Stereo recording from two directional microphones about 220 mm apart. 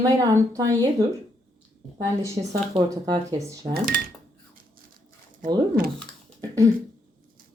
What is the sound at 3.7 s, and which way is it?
Speech, 45° right (ahead or behind).